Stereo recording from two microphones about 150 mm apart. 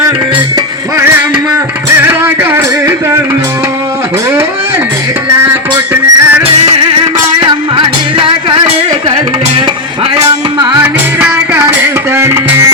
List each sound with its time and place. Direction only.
0.3 s music: 25° right (ahead or behind)
2.0 s music: 10° right (ahead or behind)
5.9 s music: 10° right (ahead or behind)
7.8 s music: 35° right (ahead or behind)
10.8 s music: 15° right (ahead or behind)